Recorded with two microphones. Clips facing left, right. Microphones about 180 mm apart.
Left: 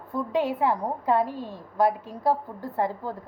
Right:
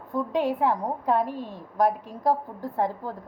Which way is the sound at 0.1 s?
15° right (ahead or behind).